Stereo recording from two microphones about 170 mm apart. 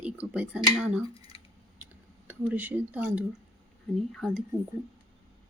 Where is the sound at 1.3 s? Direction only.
30° left (ahead or behind).